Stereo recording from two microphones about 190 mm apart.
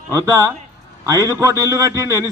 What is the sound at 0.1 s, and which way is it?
A man's voice, 15° right (ahead or behind).